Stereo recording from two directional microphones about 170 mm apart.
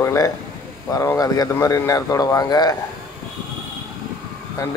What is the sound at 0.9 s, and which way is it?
Speech, 20° left (ahead or behind).